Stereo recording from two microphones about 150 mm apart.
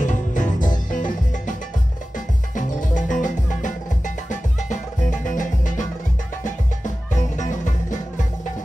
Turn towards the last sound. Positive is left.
turn(degrees=55)  # may be behind; listen again after turning